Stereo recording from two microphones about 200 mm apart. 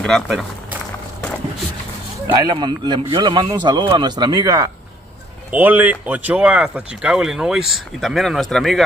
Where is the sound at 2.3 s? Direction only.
20° right (ahead or behind).